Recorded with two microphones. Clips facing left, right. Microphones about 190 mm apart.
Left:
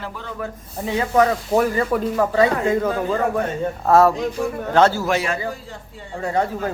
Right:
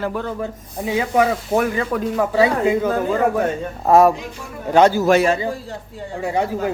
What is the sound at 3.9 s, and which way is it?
Speech, 15° right (ahead or behind).